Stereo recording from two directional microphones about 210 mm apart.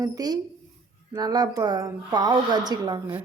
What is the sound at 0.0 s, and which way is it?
A woman's voice, 20° right (ahead or behind).